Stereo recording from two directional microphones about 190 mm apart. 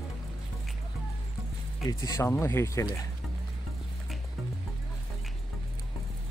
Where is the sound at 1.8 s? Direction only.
15° left (ahead or behind).